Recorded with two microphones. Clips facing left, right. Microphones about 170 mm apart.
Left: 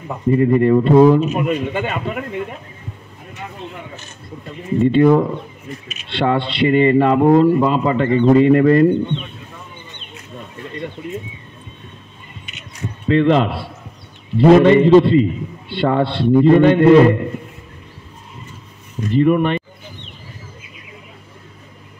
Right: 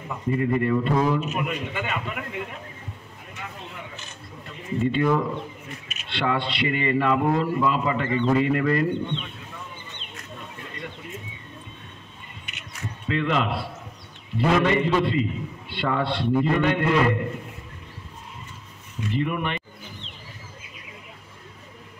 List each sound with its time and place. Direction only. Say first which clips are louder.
0.1 s speech: left 9 dB; 35° left (ahead or behind)
4.8 s speech: left 10 dB; 30° left (ahead or behind)
13.1 s speech: left 10 dB; 30° left (ahead or behind)
18.9 s speech: left 12 dB; 40° left (ahead or behind)